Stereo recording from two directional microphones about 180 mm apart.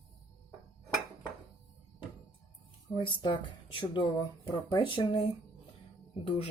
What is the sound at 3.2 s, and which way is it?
Speech, 25° left (ahead or behind).